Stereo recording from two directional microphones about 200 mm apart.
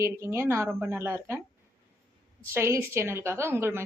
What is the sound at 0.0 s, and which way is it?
A woman's voice, 15° right (ahead or behind).